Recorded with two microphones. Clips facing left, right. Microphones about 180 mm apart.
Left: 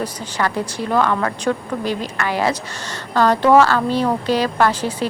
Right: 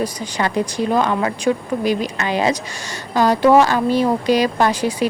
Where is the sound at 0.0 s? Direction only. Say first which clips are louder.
Right 1 dB; 15° right (ahead or behind).